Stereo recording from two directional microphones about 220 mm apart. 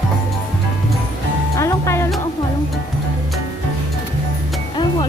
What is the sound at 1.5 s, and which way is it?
Music, 15° left (ahead or behind).